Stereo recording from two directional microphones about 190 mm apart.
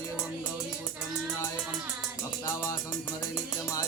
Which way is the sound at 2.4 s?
15° left (ahead or behind).